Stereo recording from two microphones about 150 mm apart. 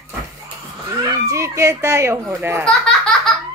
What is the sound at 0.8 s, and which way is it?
Speech, 20° right (ahead or behind).